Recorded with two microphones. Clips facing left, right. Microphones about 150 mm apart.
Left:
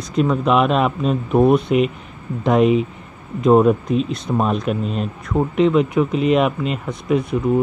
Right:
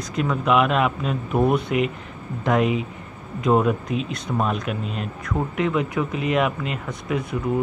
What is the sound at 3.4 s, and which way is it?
Speech, 35° left (ahead or behind).